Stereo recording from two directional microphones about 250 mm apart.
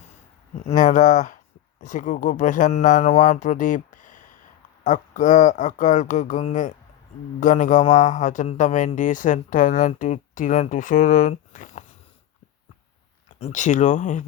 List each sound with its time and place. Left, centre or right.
0.5 s a man's voice: left
13.4 s speech: left